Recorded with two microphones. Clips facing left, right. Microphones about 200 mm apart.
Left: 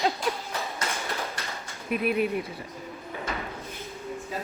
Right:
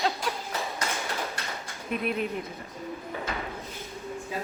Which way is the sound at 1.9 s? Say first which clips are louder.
Left 4 dB; 5° left (ahead or behind).